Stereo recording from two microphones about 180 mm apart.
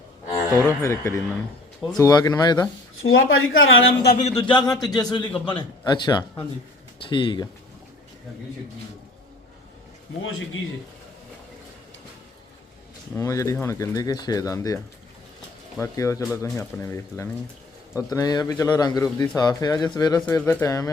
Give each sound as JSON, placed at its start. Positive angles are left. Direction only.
{"t": 0.6, "sound": "speech", "side_deg": 15}
{"t": 3.0, "sound": "speech", "side_deg": 90}
{"t": 4.1, "sound": "speech", "side_deg": 35}
{"t": 13.1, "sound": "speech", "side_deg": 15}
{"t": 15.8, "sound": "speech", "side_deg": 15}